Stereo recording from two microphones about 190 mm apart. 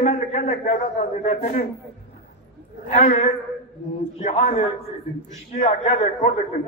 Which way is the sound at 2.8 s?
35° left (ahead or behind).